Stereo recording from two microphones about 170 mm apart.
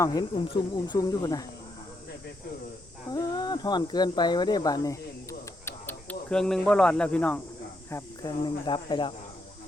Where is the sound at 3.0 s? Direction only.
25° left (ahead or behind).